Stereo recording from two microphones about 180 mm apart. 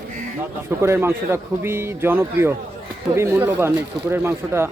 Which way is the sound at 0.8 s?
15° right (ahead or behind).